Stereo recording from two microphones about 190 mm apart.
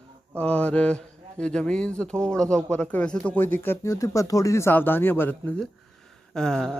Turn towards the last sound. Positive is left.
turn(degrees=5)  # may be behind; listen again after turning